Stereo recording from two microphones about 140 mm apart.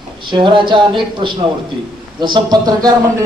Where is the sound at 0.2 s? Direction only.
35° right (ahead or behind).